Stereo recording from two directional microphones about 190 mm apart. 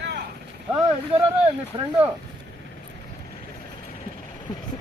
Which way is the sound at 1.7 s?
30° right (ahead or behind).